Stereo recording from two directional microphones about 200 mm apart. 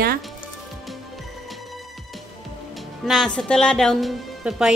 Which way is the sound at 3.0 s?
Centre (ahead or behind).